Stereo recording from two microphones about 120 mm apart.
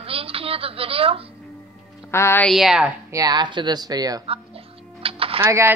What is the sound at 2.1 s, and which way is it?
Speech, 20° left (ahead or behind).